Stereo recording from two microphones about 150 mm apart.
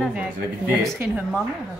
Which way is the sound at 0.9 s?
10° right (ahead or behind).